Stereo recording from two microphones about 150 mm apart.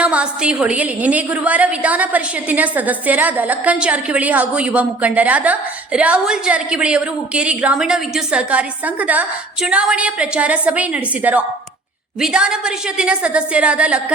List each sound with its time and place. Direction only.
0.0 s a woman's voice: 5° right (ahead or behind)